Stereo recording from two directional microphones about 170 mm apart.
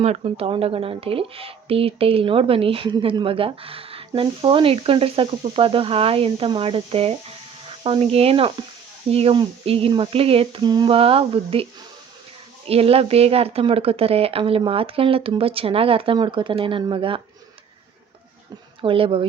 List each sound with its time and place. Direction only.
0.0 s a woman's voice: 35° right (ahead or behind)
12.6 s a woman's voice: 35° right (ahead or behind)
18.8 s a woman's voice: 30° right (ahead or behind)